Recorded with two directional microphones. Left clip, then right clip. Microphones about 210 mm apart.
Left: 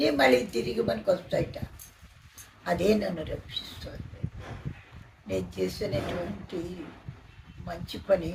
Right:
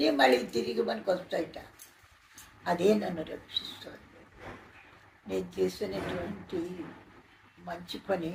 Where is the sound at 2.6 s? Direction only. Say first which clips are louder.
Left 1 dB; 25° left (ahead or behind).